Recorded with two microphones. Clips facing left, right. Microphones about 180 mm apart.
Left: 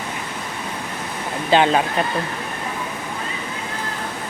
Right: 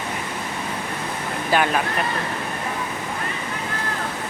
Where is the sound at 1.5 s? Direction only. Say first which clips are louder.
Left 4 dB; 25° left (ahead or behind).